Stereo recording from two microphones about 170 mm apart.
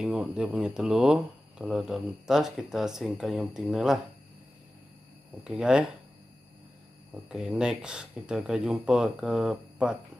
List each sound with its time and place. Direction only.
0.0 s speech: 5° right (ahead or behind)
5.4 s speech: 5° right (ahead or behind)
7.2 s speech: 5° right (ahead or behind)